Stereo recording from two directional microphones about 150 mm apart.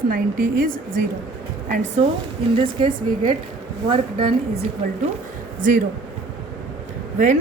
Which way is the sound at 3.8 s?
35° right (ahead or behind).